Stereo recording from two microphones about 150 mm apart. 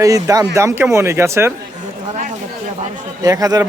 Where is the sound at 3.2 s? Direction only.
25° right (ahead or behind).